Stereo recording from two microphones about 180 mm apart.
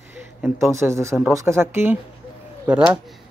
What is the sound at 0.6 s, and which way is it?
Speech, 15° right (ahead or behind).